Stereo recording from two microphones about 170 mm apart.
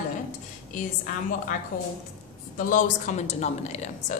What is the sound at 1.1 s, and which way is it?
A woman's voice, 55° left (ahead or behind).